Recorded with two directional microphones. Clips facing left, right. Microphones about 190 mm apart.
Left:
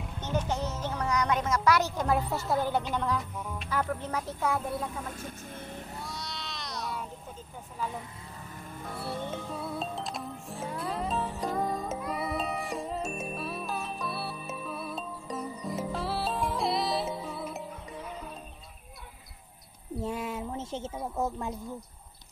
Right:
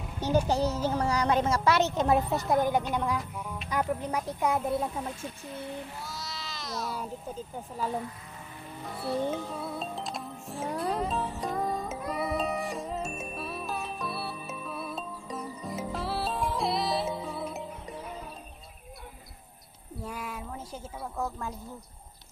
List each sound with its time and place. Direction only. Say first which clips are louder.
0.5 s a woman's voice: right 5 dB; 35° right (ahead or behind)
5.2 s speech: right 3 dB; 50° left (ahead or behind)
6.0 s a sound: even; centre (ahead or behind)
9.0 s music: right 6 dB; centre (ahead or behind)
20.0 s a sound: left 5 dB; 25° left (ahead or behind)
21.0 s speech: left 1 dB; 15° left (ahead or behind)